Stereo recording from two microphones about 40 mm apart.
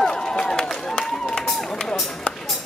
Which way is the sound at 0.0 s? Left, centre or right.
Centre.